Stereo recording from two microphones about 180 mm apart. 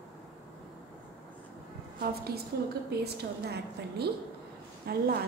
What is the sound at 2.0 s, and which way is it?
A woman's voice, 60° right (ahead or behind).